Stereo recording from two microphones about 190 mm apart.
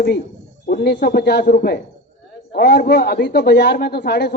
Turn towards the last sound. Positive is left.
turn(degrees=60)  # may be behind; listen again after turning